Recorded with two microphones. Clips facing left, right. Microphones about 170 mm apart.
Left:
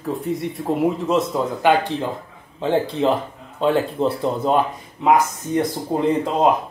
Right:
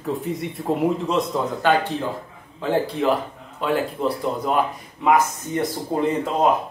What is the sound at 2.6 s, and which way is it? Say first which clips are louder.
Speech: left 2 dB; 25° left (ahead or behind).